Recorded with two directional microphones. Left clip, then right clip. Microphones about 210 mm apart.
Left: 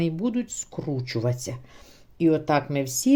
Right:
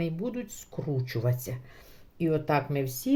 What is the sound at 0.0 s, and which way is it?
Speech, 35° left (ahead or behind).